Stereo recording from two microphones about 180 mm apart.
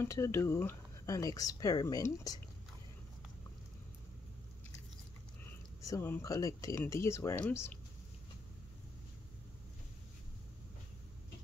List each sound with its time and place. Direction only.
0.0 s speech: 15° left (ahead or behind)
5.4 s speech: 15° left (ahead or behind)